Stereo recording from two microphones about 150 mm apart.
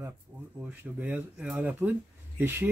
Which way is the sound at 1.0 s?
10° right (ahead or behind).